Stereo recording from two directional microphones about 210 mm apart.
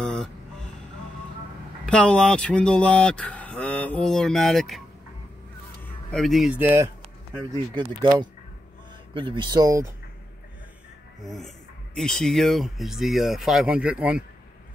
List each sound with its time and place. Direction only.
0.0 s music: 5° left (ahead or behind)
1.9 s cattle: 5° left (ahead or behind)
6.1 s cattle: centre (ahead or behind)
7.7 s speech: 20° right (ahead or behind)
11.9 s cattle: 5° left (ahead or behind)